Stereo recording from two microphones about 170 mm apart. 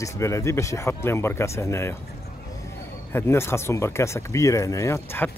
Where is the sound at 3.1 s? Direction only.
15° left (ahead or behind).